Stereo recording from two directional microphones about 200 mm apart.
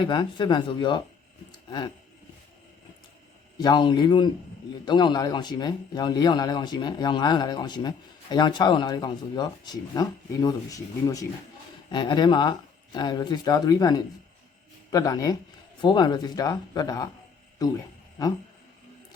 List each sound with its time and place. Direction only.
0.1 s speech: 25° left (ahead or behind)
3.6 s speech: 20° left (ahead or behind)